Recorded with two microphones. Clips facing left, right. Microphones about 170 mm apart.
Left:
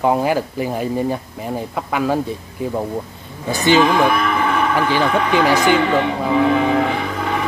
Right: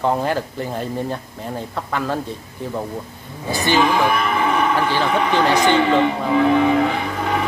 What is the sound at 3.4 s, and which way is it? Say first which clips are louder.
Speech: left 3 dB; 20° left (ahead or behind).